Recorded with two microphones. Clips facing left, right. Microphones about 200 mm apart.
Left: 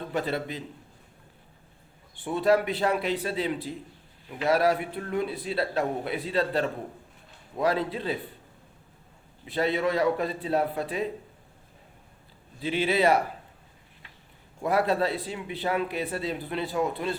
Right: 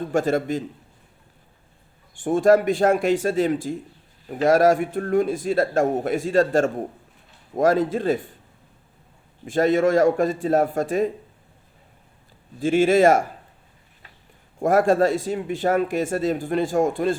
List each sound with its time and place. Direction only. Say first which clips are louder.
0.1 s speech: right 9 dB; 45° right (ahead or behind)
2.2 s speech: right 7 dB; 45° right (ahead or behind)
9.4 s speech: right 8 dB; 45° right (ahead or behind)
12.5 s speech: right 9 dB; 45° right (ahead or behind)
14.6 s speech: right 7 dB; 45° right (ahead or behind)